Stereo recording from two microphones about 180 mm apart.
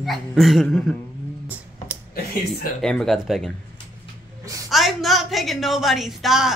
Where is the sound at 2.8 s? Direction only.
5° left (ahead or behind).